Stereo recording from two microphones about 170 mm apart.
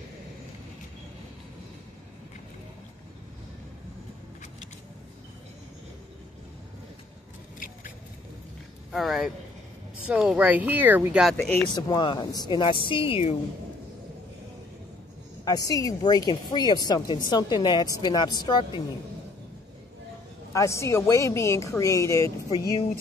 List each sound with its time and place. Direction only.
8.9 s speech: centre (ahead or behind)
11.7 s a woman's voice: 25° left (ahead or behind)
15.4 s a woman's voice: 20° left (ahead or behind)
20.5 s a woman's voice: 15° left (ahead or behind)